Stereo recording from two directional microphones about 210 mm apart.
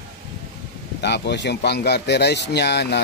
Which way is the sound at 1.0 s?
55° left (ahead or behind).